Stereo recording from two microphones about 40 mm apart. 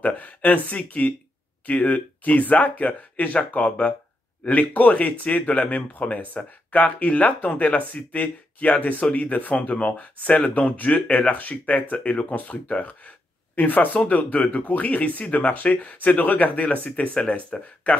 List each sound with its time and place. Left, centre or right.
0.0 s speech: left
13.6 s speech: left